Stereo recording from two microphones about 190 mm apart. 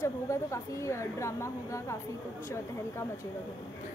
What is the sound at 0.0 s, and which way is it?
A woman's voice, 15° left (ahead or behind).